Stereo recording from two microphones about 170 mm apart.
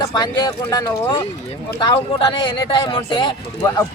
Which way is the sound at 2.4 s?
25° left (ahead or behind).